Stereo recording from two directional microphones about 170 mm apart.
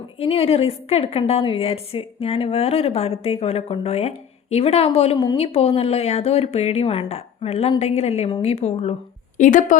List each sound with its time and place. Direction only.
0.2 s a woman's voice: 35° left (ahead or behind)
5.1 s a woman's voice: 25° left (ahead or behind)
5.4 s a woman's voice: 35° left (ahead or behind)